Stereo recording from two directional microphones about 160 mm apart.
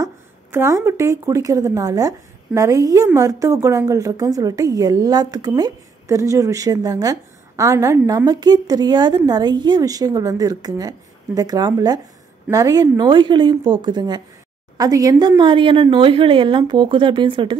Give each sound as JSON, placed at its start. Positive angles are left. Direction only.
{"t": 0.0, "sound": "a woman's voice", "side_deg": -15}